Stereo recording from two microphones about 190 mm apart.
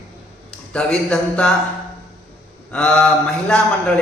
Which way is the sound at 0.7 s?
5° left (ahead or behind).